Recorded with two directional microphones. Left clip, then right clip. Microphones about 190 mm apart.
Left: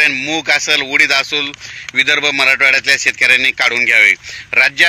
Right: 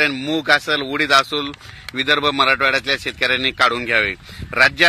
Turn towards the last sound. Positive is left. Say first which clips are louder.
# left 3 dB
turn(degrees=-40)  # may be behind; listen again after turning